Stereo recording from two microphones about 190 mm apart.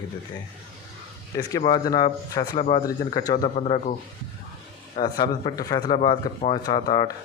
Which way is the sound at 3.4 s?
35° left (ahead or behind).